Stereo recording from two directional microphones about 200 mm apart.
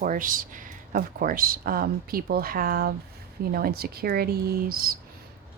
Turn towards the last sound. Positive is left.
turn(degrees=-45)  # may be behind; listen again after turning